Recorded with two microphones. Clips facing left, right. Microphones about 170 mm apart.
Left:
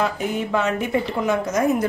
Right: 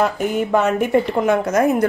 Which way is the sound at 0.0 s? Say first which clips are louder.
Right 4 dB; 45° right (ahead or behind).